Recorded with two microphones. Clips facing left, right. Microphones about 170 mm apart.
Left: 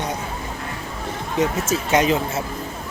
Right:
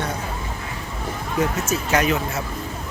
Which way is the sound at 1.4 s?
25° left (ahead or behind).